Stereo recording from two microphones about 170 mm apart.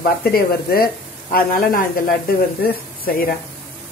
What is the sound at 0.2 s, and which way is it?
Speech, 60° left (ahead or behind).